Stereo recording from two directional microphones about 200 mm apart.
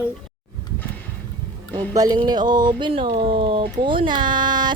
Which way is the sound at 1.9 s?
20° right (ahead or behind).